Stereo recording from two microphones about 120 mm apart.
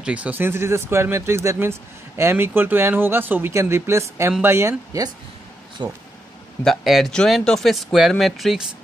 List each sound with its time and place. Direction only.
0.0 s speech: 10° right (ahead or behind); by 5.9 s 35° right (ahead or behind)
6.6 s speech: centre (ahead or behind)